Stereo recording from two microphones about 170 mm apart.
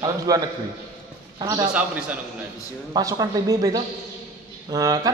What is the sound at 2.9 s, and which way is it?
A man's voice, 20° right (ahead or behind).